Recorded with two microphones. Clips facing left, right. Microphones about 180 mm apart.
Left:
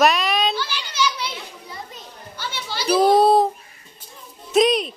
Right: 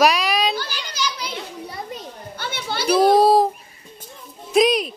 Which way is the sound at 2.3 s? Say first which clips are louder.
Right 2 dB; 55° right (ahead or behind).